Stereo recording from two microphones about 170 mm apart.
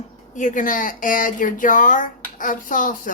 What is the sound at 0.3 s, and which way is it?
A woman's voice, 50° left (ahead or behind).